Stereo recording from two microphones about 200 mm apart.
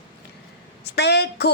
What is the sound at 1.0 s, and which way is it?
Speech, 55° left (ahead or behind).